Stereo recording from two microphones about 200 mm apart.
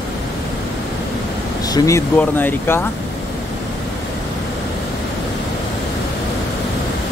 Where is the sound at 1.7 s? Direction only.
15° left (ahead or behind).